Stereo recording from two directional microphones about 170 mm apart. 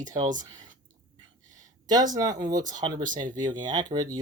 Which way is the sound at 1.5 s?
20° right (ahead or behind).